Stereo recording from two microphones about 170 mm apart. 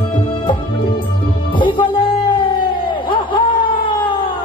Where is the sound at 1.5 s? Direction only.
30° left (ahead or behind).